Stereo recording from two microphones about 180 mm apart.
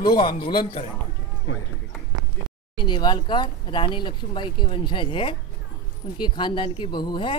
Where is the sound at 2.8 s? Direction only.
25° left (ahead or behind).